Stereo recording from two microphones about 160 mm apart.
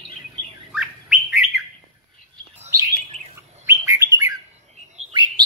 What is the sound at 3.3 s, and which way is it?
Bird, 20° right (ahead or behind).